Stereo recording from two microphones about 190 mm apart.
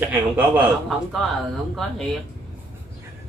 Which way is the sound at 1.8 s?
Centre (ahead or behind).